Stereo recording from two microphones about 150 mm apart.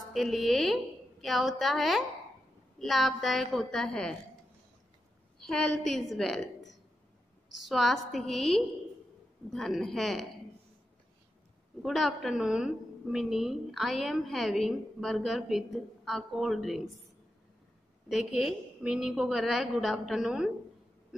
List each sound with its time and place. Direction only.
0.1 s a woman's voice: centre (ahead or behind)
5.5 s a woman's voice: 5° left (ahead or behind)
7.6 s a woman's voice: centre (ahead or behind)
11.8 s a woman's voice: centre (ahead or behind)
18.0 s a woman's voice: 5° right (ahead or behind)